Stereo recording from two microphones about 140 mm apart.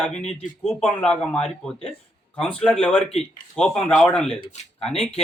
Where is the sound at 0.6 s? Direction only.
5° left (ahead or behind).